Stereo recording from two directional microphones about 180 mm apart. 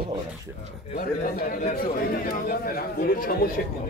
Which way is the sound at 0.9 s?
50° left (ahead or behind).